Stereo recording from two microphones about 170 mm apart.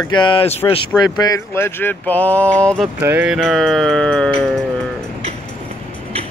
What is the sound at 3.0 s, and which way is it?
Speech, 10° right (ahead or behind).